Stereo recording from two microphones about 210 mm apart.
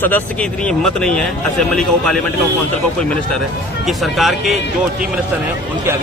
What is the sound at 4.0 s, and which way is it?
Speech, centre (ahead or behind).